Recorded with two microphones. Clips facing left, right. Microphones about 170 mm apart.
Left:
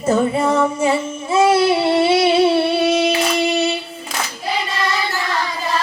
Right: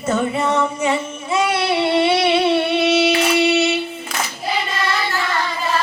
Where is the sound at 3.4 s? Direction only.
35° left (ahead or behind).